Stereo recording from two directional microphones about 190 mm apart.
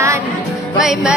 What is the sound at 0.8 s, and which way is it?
Music, 5° right (ahead or behind).